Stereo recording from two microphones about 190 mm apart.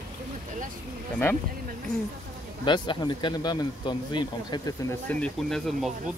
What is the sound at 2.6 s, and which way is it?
Speech, 25° left (ahead or behind).